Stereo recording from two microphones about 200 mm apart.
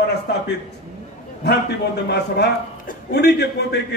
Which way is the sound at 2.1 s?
55° left (ahead or behind).